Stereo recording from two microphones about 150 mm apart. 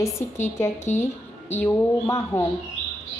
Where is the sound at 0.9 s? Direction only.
50° left (ahead or behind).